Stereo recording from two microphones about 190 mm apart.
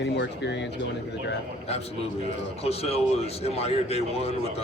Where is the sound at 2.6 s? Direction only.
35° left (ahead or behind).